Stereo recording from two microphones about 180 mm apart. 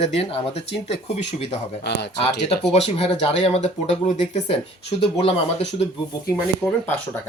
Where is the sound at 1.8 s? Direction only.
65° left (ahead or behind).